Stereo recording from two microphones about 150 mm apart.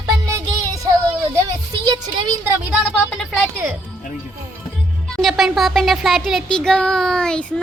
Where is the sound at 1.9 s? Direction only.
30° right (ahead or behind).